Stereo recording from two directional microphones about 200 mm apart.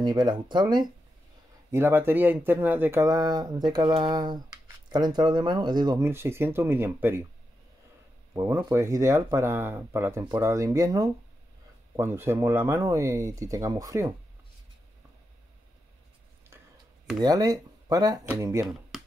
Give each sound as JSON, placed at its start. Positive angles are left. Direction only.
{"t": 0.0, "sound": "speech", "side_deg": -20}
{"t": 8.4, "sound": "speech", "side_deg": -15}
{"t": 16.4, "sound": "a sound", "side_deg": -10}
{"t": 17.2, "sound": "speech", "side_deg": -20}